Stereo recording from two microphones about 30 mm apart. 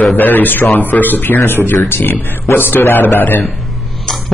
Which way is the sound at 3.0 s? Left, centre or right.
Left.